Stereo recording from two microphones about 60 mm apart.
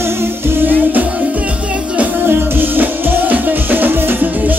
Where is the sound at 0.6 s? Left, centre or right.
Right.